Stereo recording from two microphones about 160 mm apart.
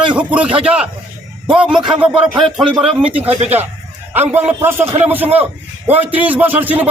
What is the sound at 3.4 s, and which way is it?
Speech, 40° right (ahead or behind).